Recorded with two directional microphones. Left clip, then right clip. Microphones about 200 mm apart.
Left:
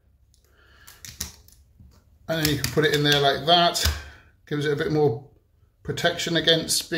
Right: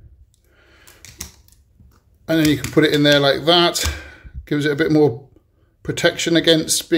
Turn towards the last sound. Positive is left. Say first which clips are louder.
# right 5 dB
turn(degrees=-40)  # may be behind; listen again after turning